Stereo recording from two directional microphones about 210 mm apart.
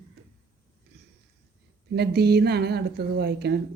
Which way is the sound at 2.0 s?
50° right (ahead or behind).